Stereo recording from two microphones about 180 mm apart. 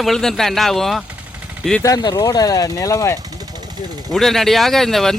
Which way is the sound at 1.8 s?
20° left (ahead or behind).